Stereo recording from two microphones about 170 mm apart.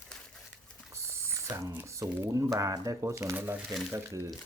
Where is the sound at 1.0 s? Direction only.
15° right (ahead or behind).